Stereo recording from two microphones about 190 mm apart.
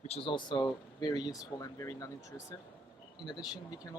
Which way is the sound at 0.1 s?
30° left (ahead or behind).